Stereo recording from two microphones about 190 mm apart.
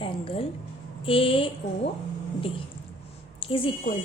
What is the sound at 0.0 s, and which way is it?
A woman's voice, 30° left (ahead or behind).